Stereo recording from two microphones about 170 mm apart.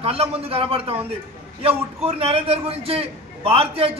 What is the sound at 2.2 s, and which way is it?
A man's voice, 35° right (ahead or behind).